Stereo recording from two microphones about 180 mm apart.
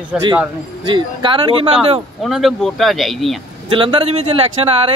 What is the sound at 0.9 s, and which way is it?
Speech, 25° right (ahead or behind).